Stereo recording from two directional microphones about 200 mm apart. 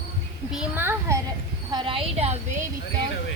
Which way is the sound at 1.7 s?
25° right (ahead or behind).